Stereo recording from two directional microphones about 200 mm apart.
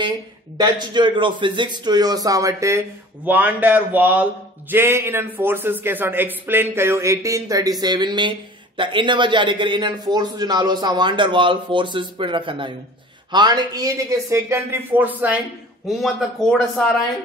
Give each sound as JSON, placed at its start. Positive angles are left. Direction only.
{"t": 0.6, "sound": "a man's voice", "side_deg": -20}